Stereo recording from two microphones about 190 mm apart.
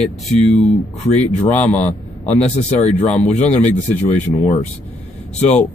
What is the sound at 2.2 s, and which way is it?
Speech, 35° left (ahead or behind).